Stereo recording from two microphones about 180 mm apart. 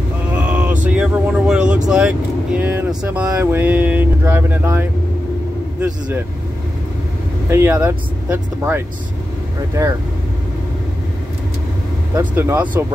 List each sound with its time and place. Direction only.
0.4 s a sound: 5° right (ahead or behind)
0.8 s vehicle: 5° right (ahead or behind)
1.9 s speech: 5° right (ahead or behind)
7.4 s speech: 15° right (ahead or behind)
12.2 s speech: 10° right (ahead or behind)